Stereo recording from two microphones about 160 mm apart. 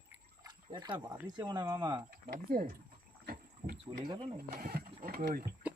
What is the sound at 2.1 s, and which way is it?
Speech, 70° right (ahead or behind).